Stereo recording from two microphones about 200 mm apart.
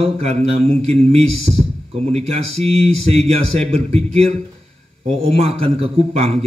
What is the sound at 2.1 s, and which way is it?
A man's voice, 30° right (ahead or behind).